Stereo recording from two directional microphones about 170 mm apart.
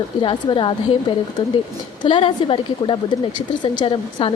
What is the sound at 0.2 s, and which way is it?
Speech, 30° left (ahead or behind).